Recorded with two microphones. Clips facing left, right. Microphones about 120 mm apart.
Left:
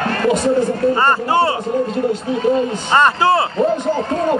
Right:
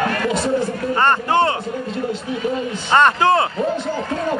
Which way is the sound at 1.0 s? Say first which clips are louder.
Left 1 dB; 10° left (ahead or behind).